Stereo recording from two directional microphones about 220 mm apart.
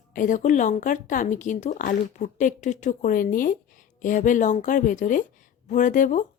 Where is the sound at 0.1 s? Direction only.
35° left (ahead or behind).